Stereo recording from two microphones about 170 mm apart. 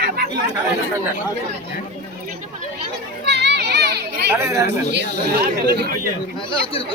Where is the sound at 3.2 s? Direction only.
80° right.